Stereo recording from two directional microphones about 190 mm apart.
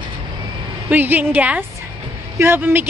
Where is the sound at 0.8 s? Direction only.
10° right (ahead or behind).